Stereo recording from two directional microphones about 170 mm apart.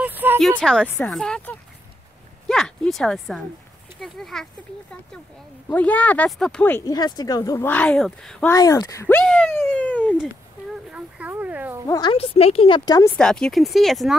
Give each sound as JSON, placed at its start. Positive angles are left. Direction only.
{"t": 0.0, "sound": "a sound", "side_deg": -10}
{"t": 0.4, "sound": "speech", "side_deg": 5}
{"t": 5.7, "sound": "speech", "side_deg": 10}
{"t": 6.9, "sound": "speech", "side_deg": 25}
{"t": 8.5, "sound": "speech", "side_deg": 20}
{"t": 10.9, "sound": "a sound", "side_deg": -10}
{"t": 11.9, "sound": "a woman's voice", "side_deg": 30}
{"t": 13.2, "sound": "speech", "side_deg": 5}